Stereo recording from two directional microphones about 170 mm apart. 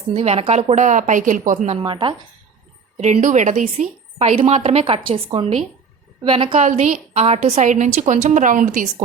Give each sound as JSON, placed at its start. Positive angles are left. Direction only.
{"t": 0.1, "sound": "a woman's voice", "side_deg": -35}
{"t": 1.8, "sound": "speech", "side_deg": -30}
{"t": 3.0, "sound": "speech", "side_deg": -45}
{"t": 6.7, "sound": "a woman's voice", "side_deg": -45}